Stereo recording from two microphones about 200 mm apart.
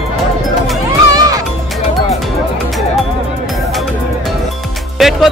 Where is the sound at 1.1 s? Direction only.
20° right (ahead or behind).